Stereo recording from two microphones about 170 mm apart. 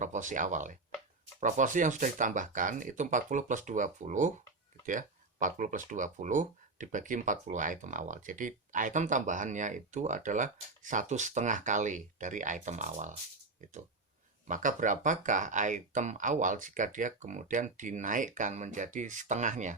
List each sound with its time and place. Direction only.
0.0 s speech: 45° right (ahead or behind)
14.4 s speech: 50° right (ahead or behind)